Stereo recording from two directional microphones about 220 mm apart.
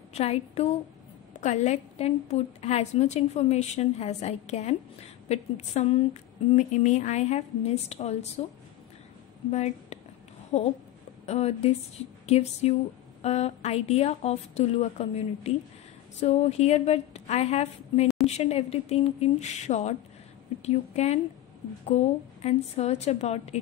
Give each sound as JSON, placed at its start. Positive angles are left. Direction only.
{"t": 0.1, "sound": "a woman's voice", "side_deg": 30}
{"t": 9.5, "sound": "a woman's voice", "side_deg": 30}